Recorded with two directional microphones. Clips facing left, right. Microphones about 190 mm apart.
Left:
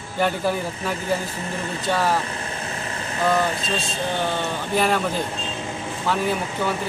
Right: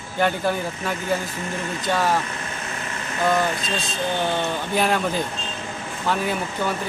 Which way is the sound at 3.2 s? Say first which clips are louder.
Even; 30° left (ahead or behind).